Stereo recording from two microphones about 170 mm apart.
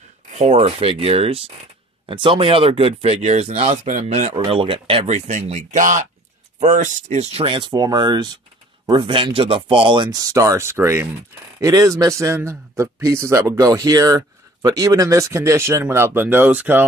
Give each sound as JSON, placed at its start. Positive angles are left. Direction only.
{"t": 0.4, "sound": "a man's voice", "side_deg": -35}